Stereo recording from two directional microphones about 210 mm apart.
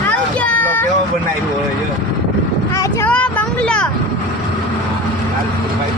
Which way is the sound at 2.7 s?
5° left (ahead or behind).